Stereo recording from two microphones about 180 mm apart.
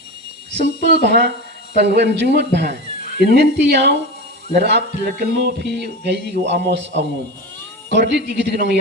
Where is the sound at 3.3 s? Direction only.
65° right (ahead or behind).